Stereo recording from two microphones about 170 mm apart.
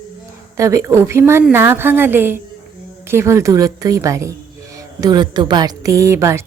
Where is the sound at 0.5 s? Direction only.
20° right (ahead or behind).